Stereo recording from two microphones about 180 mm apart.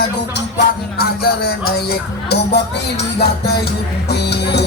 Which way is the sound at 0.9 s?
60° left (ahead or behind).